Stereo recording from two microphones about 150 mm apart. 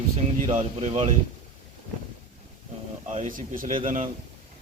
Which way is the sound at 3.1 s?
60° right (ahead or behind).